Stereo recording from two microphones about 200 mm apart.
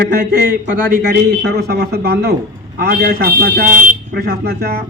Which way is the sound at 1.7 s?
50° right (ahead or behind).